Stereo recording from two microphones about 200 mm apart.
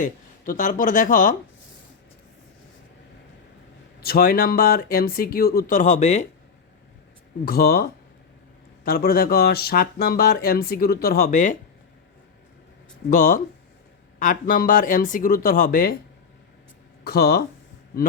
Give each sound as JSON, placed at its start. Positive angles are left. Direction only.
{"t": 0.0, "sound": "speech", "side_deg": 40}
{"t": 4.0, "sound": "speech", "side_deg": 50}
{"t": 7.4, "sound": "speech", "side_deg": 50}
{"t": 13.1, "sound": "speech", "side_deg": 45}
{"t": 17.0, "sound": "speech", "side_deg": 50}